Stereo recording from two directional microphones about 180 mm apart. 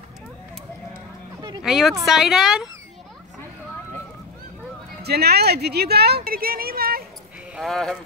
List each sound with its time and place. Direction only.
1.6 s speech: centre (ahead or behind)
5.0 s a woman's voice: 60° right (ahead or behind)
7.5 s speech: centre (ahead or behind)